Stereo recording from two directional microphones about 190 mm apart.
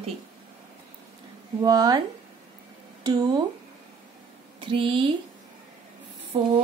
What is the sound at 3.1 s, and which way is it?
Speech, 20° right (ahead or behind).